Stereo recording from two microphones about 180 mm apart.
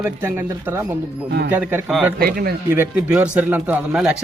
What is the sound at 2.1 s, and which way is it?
Speech, 55° right (ahead or behind).